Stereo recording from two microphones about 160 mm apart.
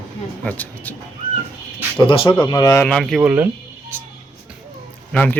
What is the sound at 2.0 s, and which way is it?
Speech, 35° left (ahead or behind).